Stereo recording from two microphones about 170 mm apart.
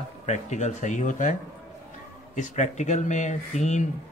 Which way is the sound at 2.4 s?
45° left (ahead or behind).